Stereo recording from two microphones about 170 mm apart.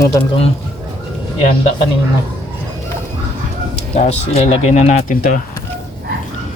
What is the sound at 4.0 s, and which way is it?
Speech, 40° left (ahead or behind).